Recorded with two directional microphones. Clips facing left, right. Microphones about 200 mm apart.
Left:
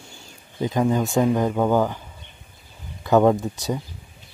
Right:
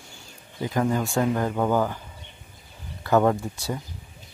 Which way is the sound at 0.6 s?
20° left (ahead or behind).